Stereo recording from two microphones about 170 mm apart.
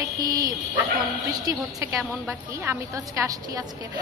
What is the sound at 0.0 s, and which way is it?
A woman's voice, 20° right (ahead or behind).